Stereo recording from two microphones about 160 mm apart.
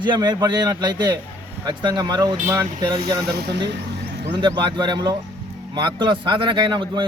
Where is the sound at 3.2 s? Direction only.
85° right.